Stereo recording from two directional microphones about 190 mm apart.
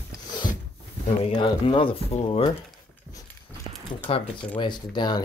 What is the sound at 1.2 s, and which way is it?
Speech, 30° left (ahead or behind).